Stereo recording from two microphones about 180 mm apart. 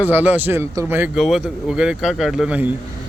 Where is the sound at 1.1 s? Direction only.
Centre (ahead or behind).